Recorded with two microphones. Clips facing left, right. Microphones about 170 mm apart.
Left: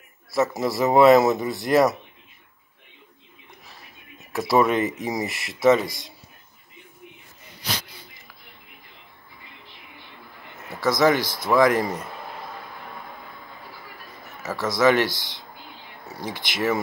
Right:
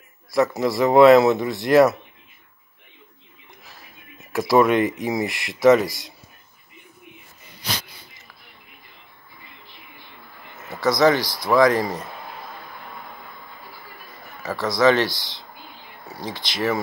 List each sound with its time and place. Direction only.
0.6 s speech: centre (ahead or behind)
4.3 s speech: centre (ahead or behind)
10.7 s speech: 15° right (ahead or behind)
11.1 s speech: 20° left (ahead or behind)
14.4 s a man's voice: 15° right (ahead or behind)
14.8 s speech: 15° left (ahead or behind)